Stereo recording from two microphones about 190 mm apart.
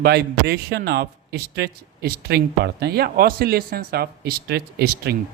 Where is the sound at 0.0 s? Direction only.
55° right (ahead or behind).